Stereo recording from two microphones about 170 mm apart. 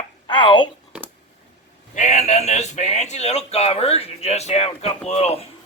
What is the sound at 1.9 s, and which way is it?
Speech, 45° left (ahead or behind).